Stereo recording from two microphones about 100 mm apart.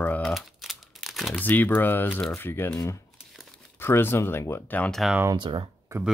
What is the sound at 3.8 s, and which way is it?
Speech, 25° left (ahead or behind).